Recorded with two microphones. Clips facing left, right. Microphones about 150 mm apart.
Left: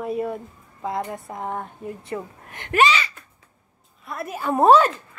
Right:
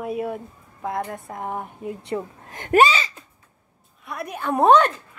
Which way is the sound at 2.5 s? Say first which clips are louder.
Right 3 dB; 40° right (ahead or behind).